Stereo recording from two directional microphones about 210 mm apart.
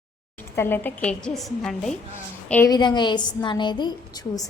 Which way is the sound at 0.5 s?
10° left (ahead or behind).